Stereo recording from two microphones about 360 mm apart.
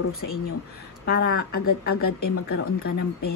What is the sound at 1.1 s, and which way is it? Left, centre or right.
A woman's voice, left.